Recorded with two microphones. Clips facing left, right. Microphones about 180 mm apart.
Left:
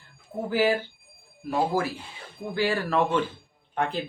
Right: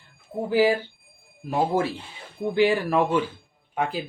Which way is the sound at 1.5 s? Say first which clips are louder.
Right 2 dB; 25° right (ahead or behind).